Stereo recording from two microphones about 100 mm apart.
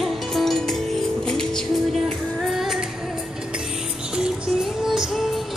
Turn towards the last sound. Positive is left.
turn(degrees=0)  # may be behind; listen again after turning